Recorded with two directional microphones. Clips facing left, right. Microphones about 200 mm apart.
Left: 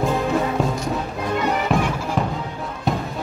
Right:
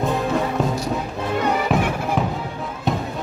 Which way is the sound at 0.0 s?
Centre (ahead or behind).